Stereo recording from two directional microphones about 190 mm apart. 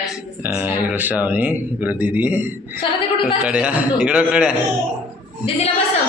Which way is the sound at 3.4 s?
5° right (ahead or behind).